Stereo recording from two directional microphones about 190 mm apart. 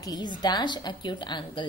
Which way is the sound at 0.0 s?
20° left (ahead or behind).